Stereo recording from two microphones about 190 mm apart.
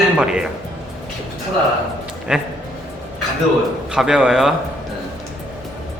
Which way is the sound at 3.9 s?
5° right (ahead or behind).